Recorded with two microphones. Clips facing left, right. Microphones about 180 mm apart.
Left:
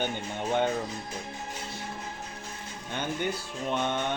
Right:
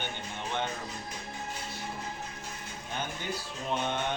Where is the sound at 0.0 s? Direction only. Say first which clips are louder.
Left 7 dB; 45° left (ahead or behind).